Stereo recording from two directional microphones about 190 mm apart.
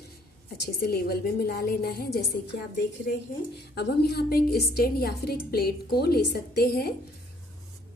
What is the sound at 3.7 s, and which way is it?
A woman's voice, 60° left (ahead or behind).